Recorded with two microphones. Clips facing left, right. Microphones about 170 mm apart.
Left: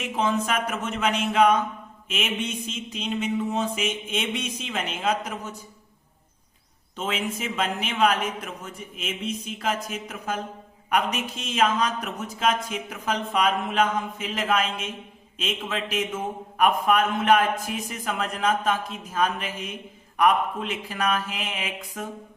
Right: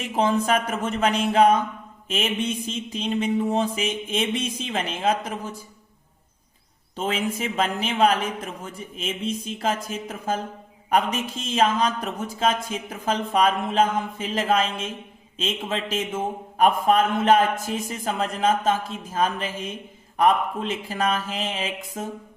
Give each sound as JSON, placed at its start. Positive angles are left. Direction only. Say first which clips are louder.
{"t": 0.0, "sound": "mantra", "louder": "right 3 dB", "side_deg": -35}
{"t": 6.9, "sound": "mantra", "louder": "right 3 dB", "side_deg": -35}
{"t": 10.8, "sound": "a man's voice", "louder": "right 3 dB", "side_deg": -30}